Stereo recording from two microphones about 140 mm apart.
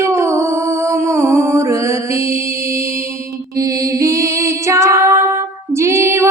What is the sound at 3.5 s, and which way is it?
Female singing, 25° right (ahead or behind).